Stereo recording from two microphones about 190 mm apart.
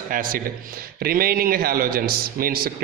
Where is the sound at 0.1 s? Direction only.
45° right (ahead or behind).